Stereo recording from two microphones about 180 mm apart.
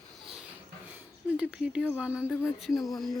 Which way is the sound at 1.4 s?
5° right (ahead or behind).